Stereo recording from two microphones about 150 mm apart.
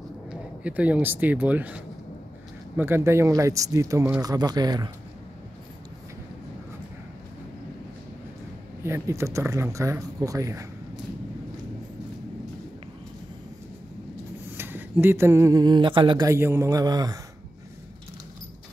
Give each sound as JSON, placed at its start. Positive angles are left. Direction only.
{"t": 0.3, "sound": "speech", "side_deg": -10}
{"t": 2.8, "sound": "speech", "side_deg": -15}
{"t": 8.8, "sound": "speech", "side_deg": -20}
{"t": 14.6, "sound": "speech", "side_deg": -15}
{"t": 16.3, "sound": "speech", "side_deg": -15}